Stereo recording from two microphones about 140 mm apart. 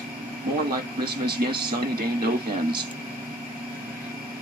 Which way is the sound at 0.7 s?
35° right (ahead or behind).